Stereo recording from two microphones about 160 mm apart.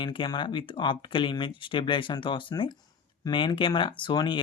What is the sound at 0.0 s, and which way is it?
Speech, 30° left (ahead or behind).